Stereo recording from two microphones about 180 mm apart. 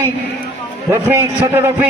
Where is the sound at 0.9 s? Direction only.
15° right (ahead or behind).